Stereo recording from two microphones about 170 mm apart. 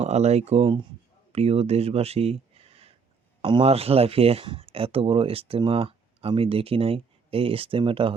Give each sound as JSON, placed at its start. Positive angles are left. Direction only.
{"t": 0.0, "sound": "speech", "side_deg": -40}